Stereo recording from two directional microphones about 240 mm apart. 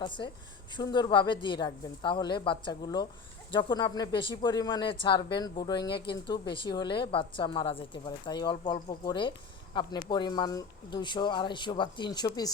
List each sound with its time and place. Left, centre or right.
0.0 s speech: centre